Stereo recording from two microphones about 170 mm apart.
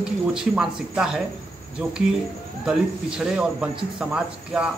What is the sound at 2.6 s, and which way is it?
Speech, 5° right (ahead or behind).